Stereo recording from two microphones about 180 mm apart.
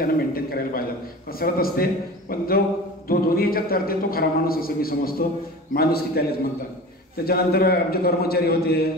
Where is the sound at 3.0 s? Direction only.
55° left (ahead or behind).